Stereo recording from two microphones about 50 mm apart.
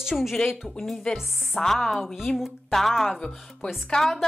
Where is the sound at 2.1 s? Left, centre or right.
Centre.